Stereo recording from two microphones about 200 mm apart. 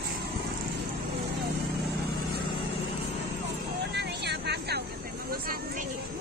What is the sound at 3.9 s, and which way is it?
Vehicle, 55° right (ahead or behind).